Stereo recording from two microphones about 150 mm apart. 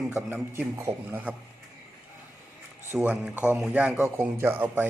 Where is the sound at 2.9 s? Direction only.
10° right (ahead or behind).